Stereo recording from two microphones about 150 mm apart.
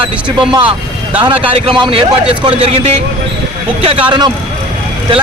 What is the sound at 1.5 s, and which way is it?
A man's voice, 35° right (ahead or behind).